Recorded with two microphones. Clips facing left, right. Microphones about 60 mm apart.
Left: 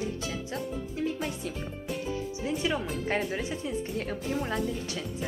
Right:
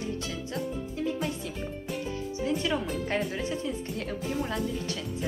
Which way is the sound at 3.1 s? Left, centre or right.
Centre.